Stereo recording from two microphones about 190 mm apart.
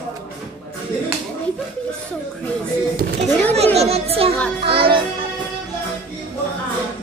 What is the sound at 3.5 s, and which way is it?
Speech, 35° right (ahead or behind).